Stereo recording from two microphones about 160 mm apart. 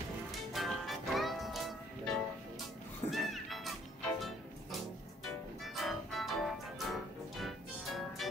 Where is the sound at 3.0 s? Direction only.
Centre (ahead or behind).